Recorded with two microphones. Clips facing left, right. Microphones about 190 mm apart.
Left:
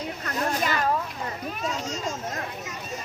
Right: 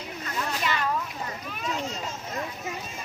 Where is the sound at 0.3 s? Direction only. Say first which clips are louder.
Left 3 dB; 45° left (ahead or behind).